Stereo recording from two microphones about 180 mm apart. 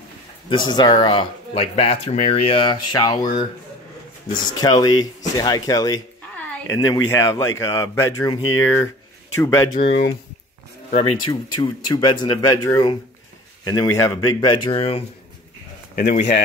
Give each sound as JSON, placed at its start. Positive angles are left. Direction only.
{"t": 0.5, "sound": "speech", "side_deg": 25}
{"t": 4.6, "sound": "speech", "side_deg": 20}
{"t": 9.7, "sound": "speech", "side_deg": 35}
{"t": 11.0, "sound": "speech", "side_deg": 25}
{"t": 16.0, "sound": "speech", "side_deg": 45}